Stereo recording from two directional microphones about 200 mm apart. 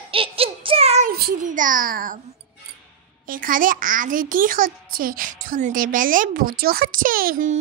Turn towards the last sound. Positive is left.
turn(degrees=-45)  # may be behind; listen again after turning